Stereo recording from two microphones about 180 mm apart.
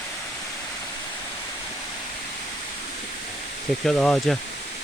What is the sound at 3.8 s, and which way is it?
Speech, 5° left (ahead or behind).